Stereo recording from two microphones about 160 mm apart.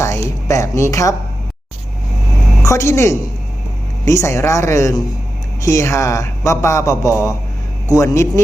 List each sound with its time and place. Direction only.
0.0 s a woman's voice: 20° left (ahead or behind)
2.6 s a woman's voice: 20° left (ahead or behind)